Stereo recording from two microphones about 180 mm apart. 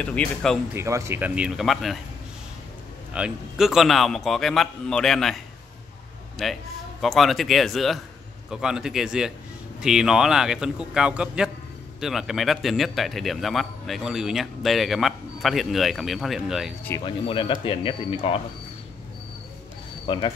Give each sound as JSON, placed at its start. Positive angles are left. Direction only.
{"t": 0.0, "sound": "a man's voice", "side_deg": 5}
{"t": 0.7, "sound": "speech", "side_deg": -15}
{"t": 3.1, "sound": "a man's voice", "side_deg": -5}
{"t": 17.0, "sound": "speech", "side_deg": 30}
{"t": 20.1, "sound": "speech", "side_deg": 25}